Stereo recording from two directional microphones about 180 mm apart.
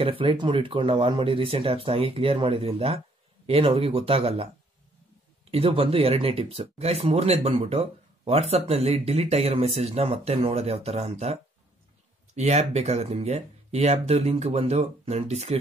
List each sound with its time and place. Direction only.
0.0 s speech: 30° right (ahead or behind)
5.5 s speech: 30° right (ahead or behind)
12.4 s speech: 40° right (ahead or behind)